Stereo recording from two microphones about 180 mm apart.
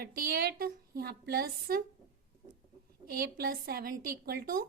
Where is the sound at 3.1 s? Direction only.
60° right (ahead or behind).